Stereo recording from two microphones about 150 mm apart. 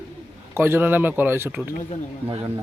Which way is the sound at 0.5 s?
15° right (ahead or behind).